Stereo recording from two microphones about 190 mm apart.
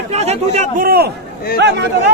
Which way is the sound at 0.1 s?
35° right (ahead or behind).